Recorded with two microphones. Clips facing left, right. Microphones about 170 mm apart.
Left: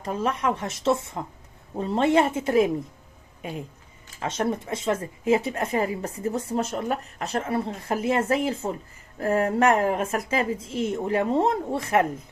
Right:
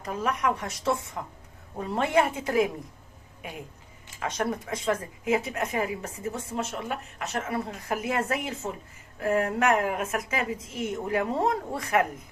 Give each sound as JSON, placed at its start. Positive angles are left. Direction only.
{"t": 0.0, "sound": "speech", "side_deg": 25}
{"t": 4.2, "sound": "speech", "side_deg": 25}